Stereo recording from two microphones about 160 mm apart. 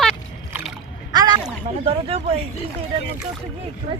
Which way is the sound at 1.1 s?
25° right (ahead or behind).